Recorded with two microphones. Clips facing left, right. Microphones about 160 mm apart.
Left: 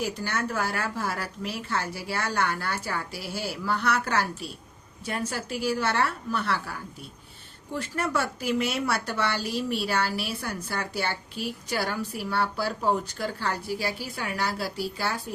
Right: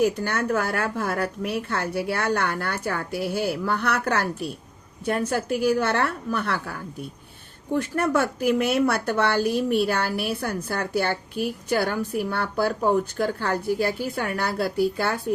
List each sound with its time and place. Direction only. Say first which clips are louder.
0.0 s a woman's voice: right 7 dB; 55° right (ahead or behind)